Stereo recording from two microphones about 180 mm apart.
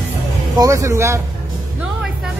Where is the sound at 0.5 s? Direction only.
20° right (ahead or behind).